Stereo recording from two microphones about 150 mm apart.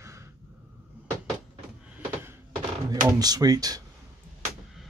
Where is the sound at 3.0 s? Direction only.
25° right (ahead or behind).